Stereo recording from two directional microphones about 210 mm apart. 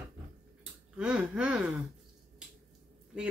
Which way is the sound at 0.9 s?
5° right (ahead or behind).